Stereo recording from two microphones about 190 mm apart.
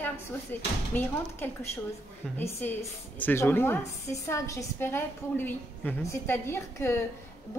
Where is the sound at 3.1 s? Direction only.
10° left (ahead or behind).